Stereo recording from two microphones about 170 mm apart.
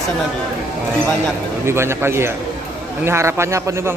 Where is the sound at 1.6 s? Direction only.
15° right (ahead or behind).